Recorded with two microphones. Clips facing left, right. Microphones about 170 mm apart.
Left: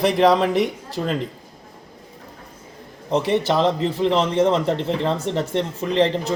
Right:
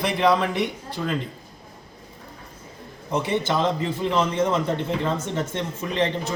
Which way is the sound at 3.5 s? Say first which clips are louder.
Left 4 dB; 75° left (ahead or behind).